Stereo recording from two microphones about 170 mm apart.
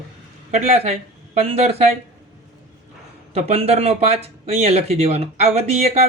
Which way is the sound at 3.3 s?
40° right (ahead or behind).